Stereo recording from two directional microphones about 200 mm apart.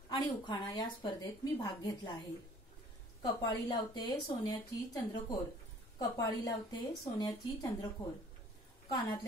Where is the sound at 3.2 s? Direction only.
20° left (ahead or behind).